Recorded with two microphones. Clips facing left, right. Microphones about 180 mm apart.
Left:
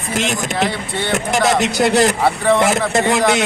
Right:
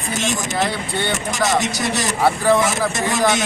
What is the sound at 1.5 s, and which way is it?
Speech, 60° left (ahead or behind).